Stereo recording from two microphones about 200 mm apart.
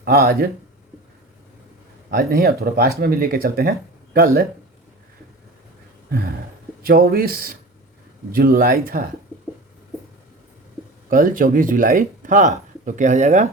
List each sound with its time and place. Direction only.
0.0 s speech: 50° right (ahead or behind)
2.0 s speech: 50° right (ahead or behind)
6.8 s speech: 50° right (ahead or behind)
11.1 s speech: 45° right (ahead or behind)